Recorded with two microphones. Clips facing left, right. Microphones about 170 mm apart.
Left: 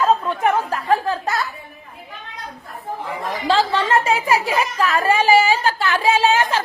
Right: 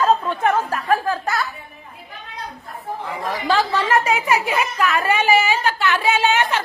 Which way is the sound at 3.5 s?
25° left (ahead or behind).